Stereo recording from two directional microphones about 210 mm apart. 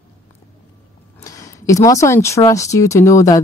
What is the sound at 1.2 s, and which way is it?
Speech, 15° left (ahead or behind).